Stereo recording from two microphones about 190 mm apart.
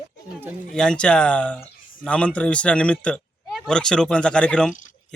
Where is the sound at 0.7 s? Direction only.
5° left (ahead or behind).